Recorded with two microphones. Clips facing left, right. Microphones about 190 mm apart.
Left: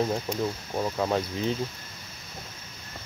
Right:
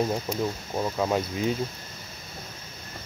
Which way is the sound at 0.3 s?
10° right (ahead or behind).